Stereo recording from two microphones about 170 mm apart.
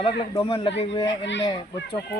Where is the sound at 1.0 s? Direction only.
90° left.